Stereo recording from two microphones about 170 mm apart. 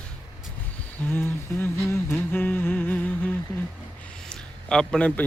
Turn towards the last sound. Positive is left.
turn(degrees=5)  # may be behind; listen again after turning